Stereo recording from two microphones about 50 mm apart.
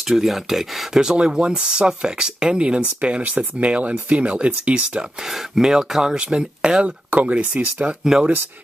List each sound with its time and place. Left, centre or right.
0.1 s speech: centre; by 5.0 s right
5.3 s speech: centre
7.1 s speech: right
8.0 s speech: centre